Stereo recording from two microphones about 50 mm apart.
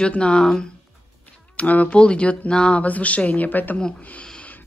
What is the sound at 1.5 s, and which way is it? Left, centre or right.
Speech, left.